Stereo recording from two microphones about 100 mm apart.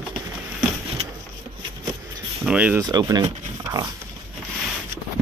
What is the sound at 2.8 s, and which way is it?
Speech, 40° right (ahead or behind).